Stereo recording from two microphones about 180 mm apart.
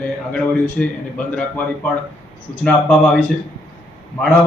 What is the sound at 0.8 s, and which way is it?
Speech, 10° left (ahead or behind).